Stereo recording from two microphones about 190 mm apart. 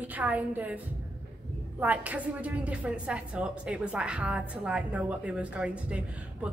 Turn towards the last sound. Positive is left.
turn(degrees=-5)  # may be behind; listen again after turning